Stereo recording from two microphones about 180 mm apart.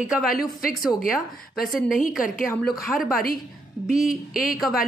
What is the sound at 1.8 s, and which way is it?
Speech, 50° left (ahead or behind).